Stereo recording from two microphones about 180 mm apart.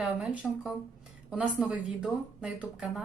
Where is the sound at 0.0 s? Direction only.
Centre (ahead or behind).